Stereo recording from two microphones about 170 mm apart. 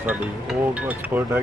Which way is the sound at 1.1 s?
15° right (ahead or behind).